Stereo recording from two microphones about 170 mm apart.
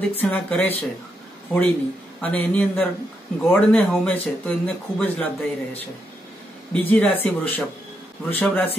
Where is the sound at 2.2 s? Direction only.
10° left (ahead or behind).